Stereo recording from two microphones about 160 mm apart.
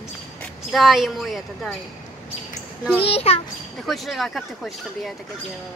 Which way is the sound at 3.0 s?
40° left (ahead or behind).